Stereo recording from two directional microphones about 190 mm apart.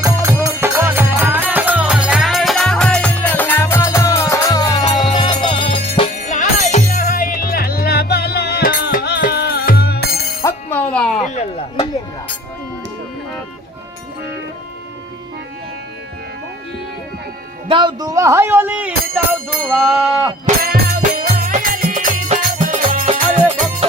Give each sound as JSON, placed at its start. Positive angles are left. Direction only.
{"t": 0.0, "sound": "music", "side_deg": -15}
{"t": 6.0, "sound": "music", "side_deg": 40}
{"t": 10.4, "sound": "music", "side_deg": 10}
{"t": 17.7, "sound": "speech", "side_deg": -25}
{"t": 20.6, "sound": "music", "side_deg": -50}